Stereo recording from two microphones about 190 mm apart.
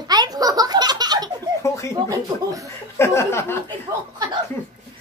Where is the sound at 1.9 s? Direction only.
15° right (ahead or behind).